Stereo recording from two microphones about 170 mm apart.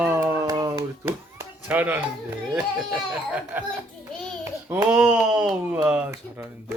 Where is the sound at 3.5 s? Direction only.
10° right (ahead or behind).